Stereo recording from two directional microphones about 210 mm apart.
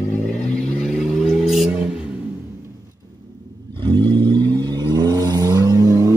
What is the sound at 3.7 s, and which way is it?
Vehicle, 20° right (ahead or behind).